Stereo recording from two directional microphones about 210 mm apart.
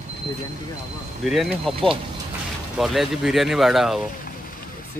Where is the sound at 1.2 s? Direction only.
Centre (ahead or behind).